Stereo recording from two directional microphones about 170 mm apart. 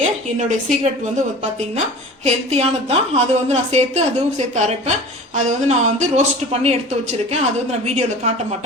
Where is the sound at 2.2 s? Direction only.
40° right (ahead or behind).